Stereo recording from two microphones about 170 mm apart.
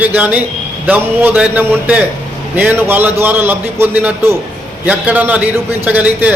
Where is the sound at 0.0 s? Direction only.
10° right (ahead or behind).